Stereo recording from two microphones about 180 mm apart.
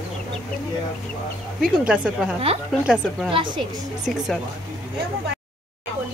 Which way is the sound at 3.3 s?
25° right (ahead or behind).